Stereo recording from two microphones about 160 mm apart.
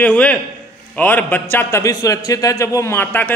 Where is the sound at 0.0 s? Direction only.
10° left (ahead or behind).